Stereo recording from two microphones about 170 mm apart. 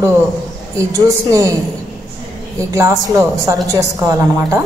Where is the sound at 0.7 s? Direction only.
20° right (ahead or behind).